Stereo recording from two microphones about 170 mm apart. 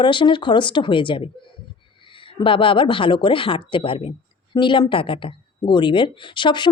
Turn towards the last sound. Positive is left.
turn(degrees=25)  # may be behind; listen again after turning